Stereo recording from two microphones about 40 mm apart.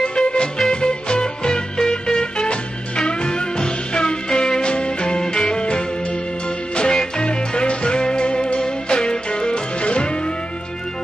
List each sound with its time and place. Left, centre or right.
0.0 s music: left